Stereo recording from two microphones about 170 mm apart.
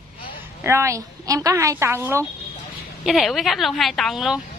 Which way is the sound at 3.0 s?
Centre (ahead or behind).